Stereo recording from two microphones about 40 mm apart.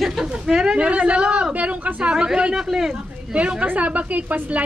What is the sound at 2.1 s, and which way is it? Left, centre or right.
Speech, right.